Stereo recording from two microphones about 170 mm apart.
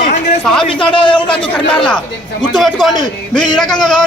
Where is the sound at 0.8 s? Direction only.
30° left (ahead or behind).